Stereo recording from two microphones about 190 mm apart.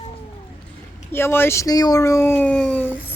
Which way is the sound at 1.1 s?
10° left (ahead or behind).